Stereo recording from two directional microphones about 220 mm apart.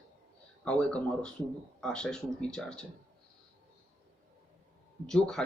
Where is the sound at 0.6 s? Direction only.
5° left (ahead or behind).